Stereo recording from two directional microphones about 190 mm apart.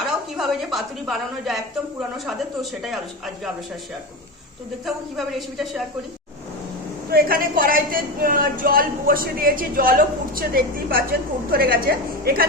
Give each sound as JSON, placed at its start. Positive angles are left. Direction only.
{"t": 0.0, "sound": "speech", "side_deg": 0}
{"t": 4.9, "sound": "speech", "side_deg": 0}
{"t": 7.1, "sound": "speech", "side_deg": -50}